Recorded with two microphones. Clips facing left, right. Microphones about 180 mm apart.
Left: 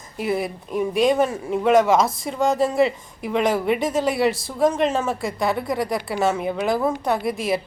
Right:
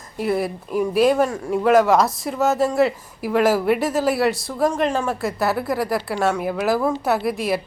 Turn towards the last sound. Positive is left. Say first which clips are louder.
# right 1 dB
turn(degrees=0)  # may be behind; listen again after turning